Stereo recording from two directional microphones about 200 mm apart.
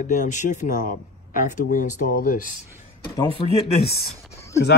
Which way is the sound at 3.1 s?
20° left (ahead or behind).